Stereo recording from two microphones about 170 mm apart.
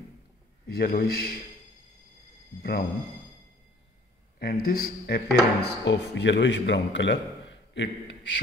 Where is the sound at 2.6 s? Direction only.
65° left (ahead or behind).